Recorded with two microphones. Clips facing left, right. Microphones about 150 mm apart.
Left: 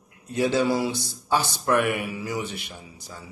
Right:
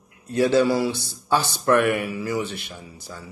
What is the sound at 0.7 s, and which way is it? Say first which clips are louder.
Speech: right 2 dB; 15° left (ahead or behind).